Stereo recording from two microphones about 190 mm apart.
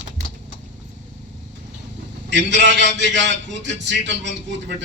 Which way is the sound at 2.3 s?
70° right (ahead or behind).